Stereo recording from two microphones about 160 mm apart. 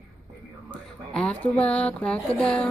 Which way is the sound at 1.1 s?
5° left (ahead or behind).